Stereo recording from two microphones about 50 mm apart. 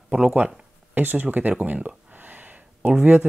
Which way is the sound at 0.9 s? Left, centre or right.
Right.